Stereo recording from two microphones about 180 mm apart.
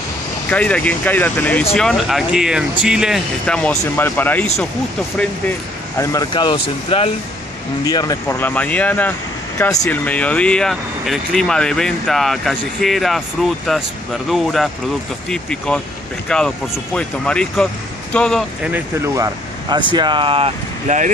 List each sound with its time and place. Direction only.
0.5 s speech: 5° left (ahead or behind)
5.9 s speech: 20° left (ahead or behind); by 18.4 s 5° left (ahead or behind)
18.6 s speech: 15° right (ahead or behind); by 20.5 s 30° right (ahead or behind)